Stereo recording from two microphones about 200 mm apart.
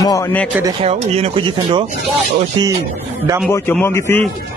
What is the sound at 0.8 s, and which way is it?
A man's voice, 30° right (ahead or behind).